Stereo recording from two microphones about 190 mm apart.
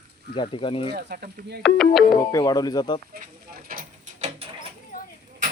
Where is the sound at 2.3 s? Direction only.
20° left (ahead or behind).